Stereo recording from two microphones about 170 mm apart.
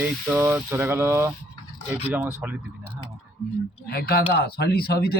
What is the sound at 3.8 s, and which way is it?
Speech, 65° left (ahead or behind).